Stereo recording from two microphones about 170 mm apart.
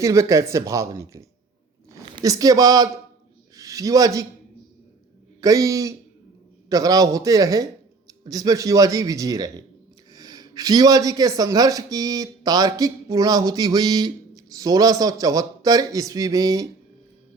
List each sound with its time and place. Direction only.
0.0 s speech: 20° right (ahead or behind)
5.4 s speech: 20° right (ahead or behind)